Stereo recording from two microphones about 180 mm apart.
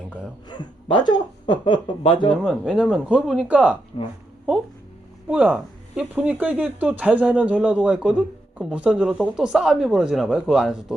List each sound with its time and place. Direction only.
0.4 s speech: 25° left (ahead or behind)
2.4 s speech: 5° right (ahead or behind)
5.3 s speech: 5° right (ahead or behind)